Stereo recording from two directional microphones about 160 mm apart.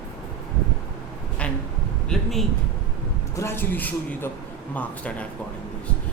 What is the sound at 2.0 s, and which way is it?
Speech, centre (ahead or behind).